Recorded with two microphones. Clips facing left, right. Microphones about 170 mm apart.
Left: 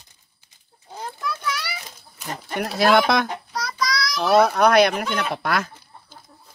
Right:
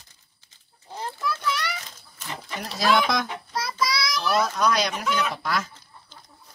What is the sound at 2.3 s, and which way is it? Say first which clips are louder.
Speech: left 7 dB; 60° left (ahead or behind).